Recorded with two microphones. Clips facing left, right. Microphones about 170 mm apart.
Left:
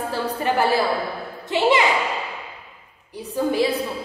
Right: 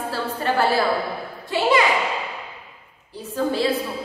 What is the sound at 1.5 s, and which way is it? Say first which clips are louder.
Speech: left 1 dB; 20° left (ahead or behind).